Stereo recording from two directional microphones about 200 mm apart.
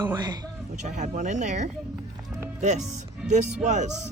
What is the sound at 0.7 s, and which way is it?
Speech, 35° right (ahead or behind).